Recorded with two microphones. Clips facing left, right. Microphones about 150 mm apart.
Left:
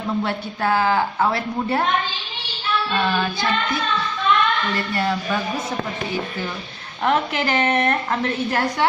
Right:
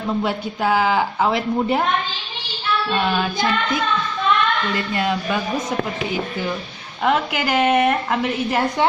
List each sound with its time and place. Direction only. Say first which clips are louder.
0.2 s a woman's voice: right 2 dB; 10° right (ahead or behind)
2.9 s a woman's voice: right 1 dB; 15° right (ahead or behind)
4.7 s a woman's voice: right 1 dB; 15° right (ahead or behind)
7.1 s a woman's voice: right 1 dB; 5° right (ahead or behind)